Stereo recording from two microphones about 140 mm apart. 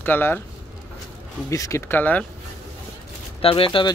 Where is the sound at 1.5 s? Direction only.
20° left (ahead or behind).